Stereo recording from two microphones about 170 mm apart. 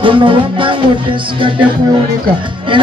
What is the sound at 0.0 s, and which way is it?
Speech, 30° right (ahead or behind).